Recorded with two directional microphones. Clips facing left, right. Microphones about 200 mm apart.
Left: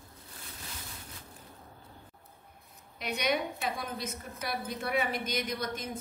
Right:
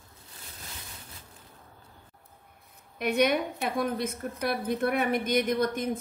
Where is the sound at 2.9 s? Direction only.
55° right (ahead or behind).